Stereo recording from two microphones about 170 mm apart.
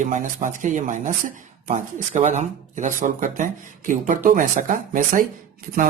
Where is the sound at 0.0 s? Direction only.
45° right (ahead or behind).